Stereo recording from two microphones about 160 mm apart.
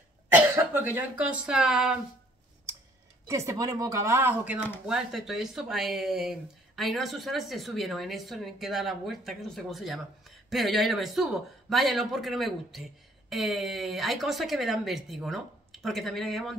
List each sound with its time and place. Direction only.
0.7 s speech: 10° right (ahead or behind)
3.3 s speech: 20° right (ahead or behind); by 16.5 s centre (ahead or behind)